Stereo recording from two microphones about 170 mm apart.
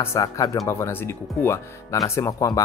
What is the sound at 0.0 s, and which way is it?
Speech, 15° left (ahead or behind).